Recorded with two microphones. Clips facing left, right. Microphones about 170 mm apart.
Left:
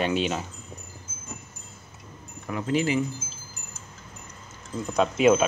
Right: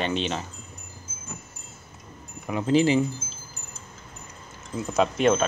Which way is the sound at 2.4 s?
25° right (ahead or behind).